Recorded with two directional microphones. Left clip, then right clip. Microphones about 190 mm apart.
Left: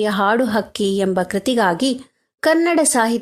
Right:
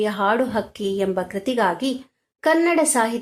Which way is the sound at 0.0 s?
45° left (ahead or behind).